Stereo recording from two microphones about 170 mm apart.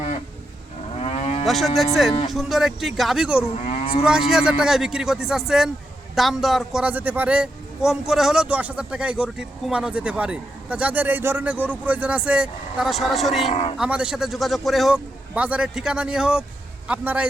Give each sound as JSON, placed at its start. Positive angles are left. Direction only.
{"t": 0.9, "sound": "moo", "side_deg": 35}
{"t": 1.5, "sound": "a man's voice", "side_deg": 0}
{"t": 3.7, "sound": "moo", "side_deg": 35}
{"t": 4.0, "sound": "a man's voice", "side_deg": -5}
{"t": 13.5, "sound": "a man's voice", "side_deg": 40}
{"t": 13.7, "sound": "a man's voice", "side_deg": -5}